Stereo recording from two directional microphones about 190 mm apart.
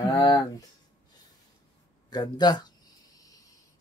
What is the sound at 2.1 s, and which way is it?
Speech, 20° left (ahead or behind).